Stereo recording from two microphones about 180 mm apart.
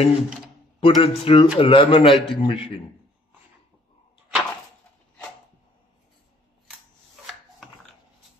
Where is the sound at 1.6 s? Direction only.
30° left (ahead or behind).